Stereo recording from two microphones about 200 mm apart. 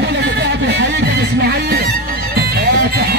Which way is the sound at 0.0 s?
55° right (ahead or behind).